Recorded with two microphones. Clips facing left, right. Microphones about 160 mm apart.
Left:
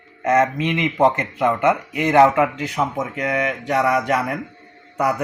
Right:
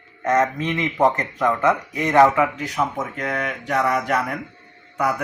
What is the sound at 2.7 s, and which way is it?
Speech, 20° left (ahead or behind).